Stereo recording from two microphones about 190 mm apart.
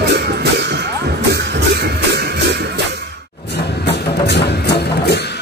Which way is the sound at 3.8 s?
60° left (ahead or behind).